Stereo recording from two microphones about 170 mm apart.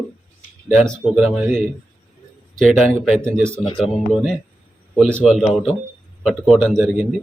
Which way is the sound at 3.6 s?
35° left (ahead or behind).